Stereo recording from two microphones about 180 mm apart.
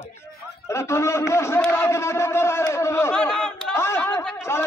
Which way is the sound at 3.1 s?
5° left (ahead or behind).